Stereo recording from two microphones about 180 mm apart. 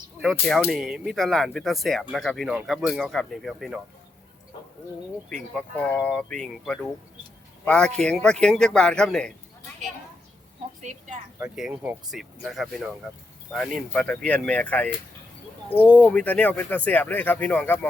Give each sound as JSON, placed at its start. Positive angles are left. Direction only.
{"t": 0.2, "sound": "speech", "side_deg": 0}
{"t": 5.5, "sound": "speech", "side_deg": 5}
{"t": 10.8, "sound": "a woman's voice", "side_deg": -45}
{"t": 11.3, "sound": "speech", "side_deg": -5}
{"t": 16.0, "sound": "speech", "side_deg": 5}